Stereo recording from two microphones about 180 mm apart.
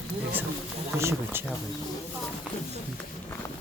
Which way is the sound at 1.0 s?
15° right (ahead or behind).